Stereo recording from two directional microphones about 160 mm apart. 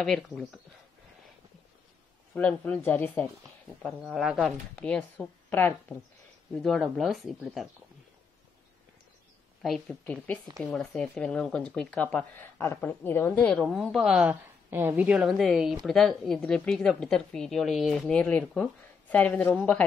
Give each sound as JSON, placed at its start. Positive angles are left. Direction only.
{"t": 0.0, "sound": "a woman's voice", "side_deg": 5}
{"t": 2.3, "sound": "speech", "side_deg": 10}
{"t": 3.8, "sound": "a woman's voice", "side_deg": 0}
{"t": 9.6, "sound": "a woman's voice", "side_deg": 0}
{"t": 14.3, "sound": "a woman's voice", "side_deg": -15}